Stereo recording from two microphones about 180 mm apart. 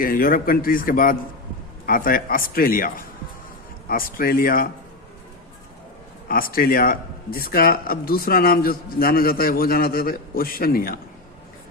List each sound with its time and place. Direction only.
0.0 s a man's voice: 50° left (ahead or behind)
6.2 s speech: 55° left (ahead or behind)